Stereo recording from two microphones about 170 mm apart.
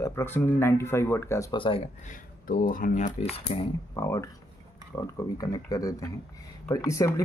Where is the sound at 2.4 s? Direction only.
55° left (ahead or behind); by 3.6 s 35° left (ahead or behind).